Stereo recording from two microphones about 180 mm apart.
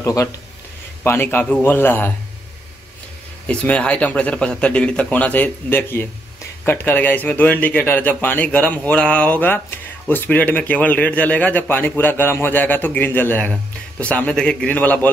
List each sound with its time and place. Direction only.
0.0 s speech: 15° left (ahead or behind)
3.4 s speech: 5° left (ahead or behind)